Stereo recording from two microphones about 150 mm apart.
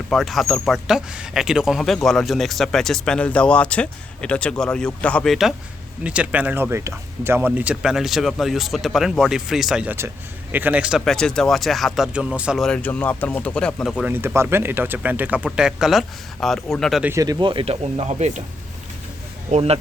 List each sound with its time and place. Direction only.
0.1 s speech: centre (ahead or behind)
12.6 s speech: 10° left (ahead or behind)
14.0 s speech: 15° right (ahead or behind); by 17.0 s 5° left (ahead or behind)
17.0 s speech: 20° right (ahead or behind)
17.4 s speech: 35° right (ahead or behind)
19.5 s speech: 45° right (ahead or behind)